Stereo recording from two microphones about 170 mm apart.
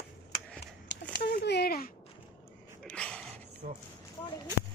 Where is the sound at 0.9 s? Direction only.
90° left.